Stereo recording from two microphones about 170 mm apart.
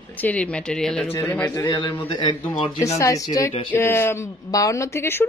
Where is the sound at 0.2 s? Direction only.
5° left (ahead or behind).